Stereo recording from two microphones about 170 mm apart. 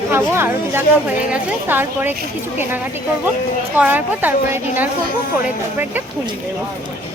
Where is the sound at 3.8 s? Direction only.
10° right (ahead or behind).